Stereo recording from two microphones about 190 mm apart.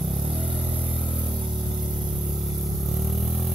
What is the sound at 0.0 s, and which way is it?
Vehicle, centre (ahead or behind).